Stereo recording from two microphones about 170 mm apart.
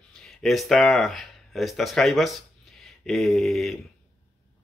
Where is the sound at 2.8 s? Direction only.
Centre (ahead or behind).